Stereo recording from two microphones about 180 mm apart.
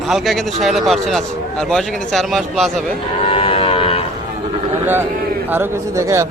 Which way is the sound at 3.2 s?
30° left (ahead or behind).